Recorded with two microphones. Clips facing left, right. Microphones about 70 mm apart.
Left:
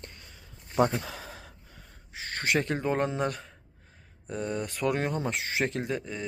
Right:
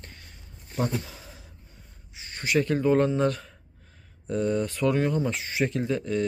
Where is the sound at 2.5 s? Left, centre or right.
Left.